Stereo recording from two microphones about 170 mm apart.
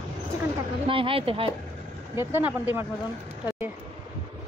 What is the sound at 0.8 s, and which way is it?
Speech, 30° right (ahead or behind).